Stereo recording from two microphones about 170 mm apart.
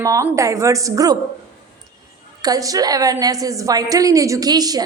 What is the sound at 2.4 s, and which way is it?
A woman's voice, 20° right (ahead or behind).